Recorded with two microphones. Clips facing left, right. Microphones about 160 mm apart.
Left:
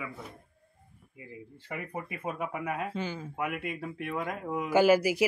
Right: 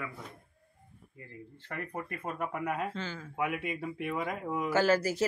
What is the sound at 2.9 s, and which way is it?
Speech, 15° left (ahead or behind).